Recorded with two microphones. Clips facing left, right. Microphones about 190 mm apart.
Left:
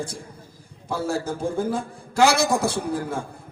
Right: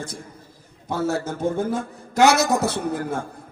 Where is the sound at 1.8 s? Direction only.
30° left (ahead or behind).